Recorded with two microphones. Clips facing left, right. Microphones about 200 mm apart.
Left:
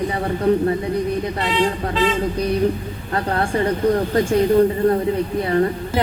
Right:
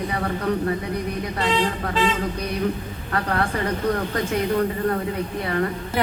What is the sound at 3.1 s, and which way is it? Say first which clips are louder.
Speech: left 3 dB; 30° left (ahead or behind).